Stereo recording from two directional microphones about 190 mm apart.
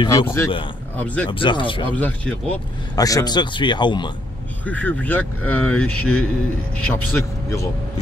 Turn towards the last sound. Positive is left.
turn(degrees=15)  # may be behind; listen again after turning